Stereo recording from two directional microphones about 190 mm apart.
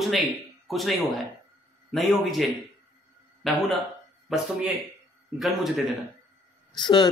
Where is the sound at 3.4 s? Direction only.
Centre (ahead or behind).